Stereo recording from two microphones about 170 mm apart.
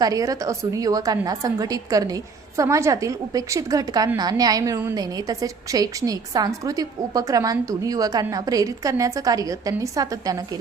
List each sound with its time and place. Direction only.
0.0 s a woman's voice: 20° right (ahead or behind)